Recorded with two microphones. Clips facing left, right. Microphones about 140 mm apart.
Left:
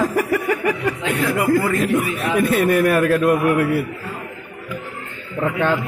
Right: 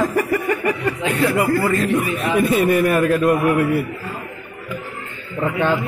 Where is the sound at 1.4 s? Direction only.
10° left (ahead or behind).